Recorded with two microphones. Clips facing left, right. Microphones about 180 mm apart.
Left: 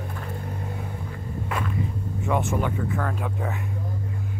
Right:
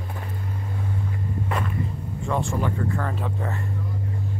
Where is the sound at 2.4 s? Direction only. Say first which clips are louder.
Even; 20° left (ahead or behind).